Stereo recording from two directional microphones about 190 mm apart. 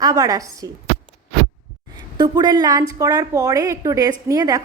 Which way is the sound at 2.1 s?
20° right (ahead or behind).